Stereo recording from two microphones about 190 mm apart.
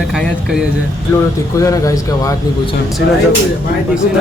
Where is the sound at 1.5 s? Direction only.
15° left (ahead or behind).